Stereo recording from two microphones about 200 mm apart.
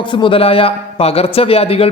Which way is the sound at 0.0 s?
25° left (ahead or behind).